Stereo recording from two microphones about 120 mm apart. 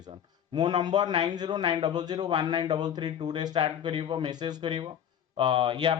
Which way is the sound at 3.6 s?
50° right (ahead or behind).